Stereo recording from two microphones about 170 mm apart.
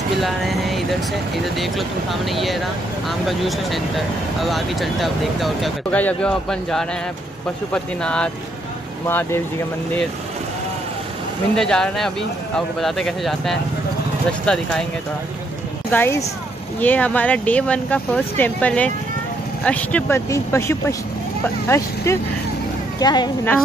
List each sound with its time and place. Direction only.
0.2 s speech: centre (ahead or behind)
11.5 s speech: 5° left (ahead or behind)
15.9 s a woman's voice: 15° left (ahead or behind)